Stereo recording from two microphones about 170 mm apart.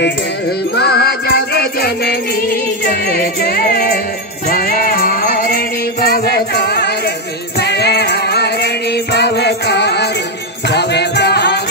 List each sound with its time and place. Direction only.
0.7 s music: 70° left (ahead or behind)